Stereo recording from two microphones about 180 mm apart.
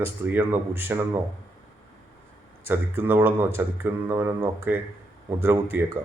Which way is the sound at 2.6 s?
10° right (ahead or behind).